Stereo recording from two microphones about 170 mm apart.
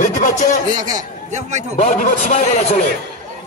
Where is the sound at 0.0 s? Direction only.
45° left (ahead or behind).